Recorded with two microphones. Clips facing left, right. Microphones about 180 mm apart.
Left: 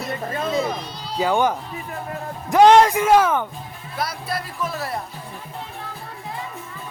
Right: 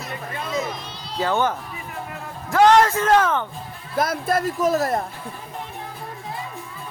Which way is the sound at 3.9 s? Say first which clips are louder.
Right 6 dB; 50° right (ahead or behind).